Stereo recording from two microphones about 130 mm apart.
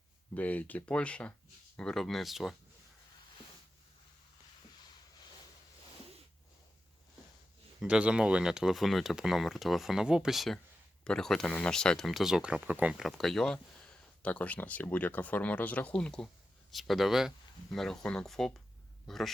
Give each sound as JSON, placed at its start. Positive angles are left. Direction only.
{"t": 0.3, "sound": "speech", "side_deg": 10}
{"t": 7.8, "sound": "speech", "side_deg": -10}